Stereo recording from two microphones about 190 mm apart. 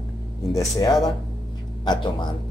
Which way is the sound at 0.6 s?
15° left (ahead or behind).